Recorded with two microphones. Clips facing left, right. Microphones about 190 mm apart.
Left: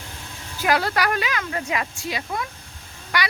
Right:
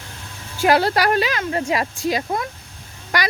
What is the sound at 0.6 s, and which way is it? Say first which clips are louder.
Speech: right 5 dB; 30° right (ahead or behind).